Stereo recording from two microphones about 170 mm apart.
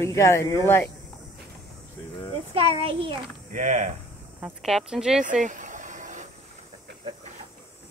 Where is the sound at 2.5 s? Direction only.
35° right (ahead or behind).